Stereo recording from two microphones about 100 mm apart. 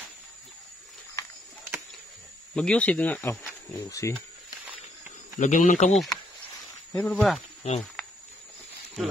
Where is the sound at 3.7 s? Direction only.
30° left (ahead or behind).